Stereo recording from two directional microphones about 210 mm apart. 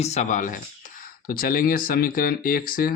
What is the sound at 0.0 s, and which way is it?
Speech, 35° left (ahead or behind).